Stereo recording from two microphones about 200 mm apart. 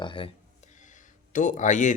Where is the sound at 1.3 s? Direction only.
40° left (ahead or behind).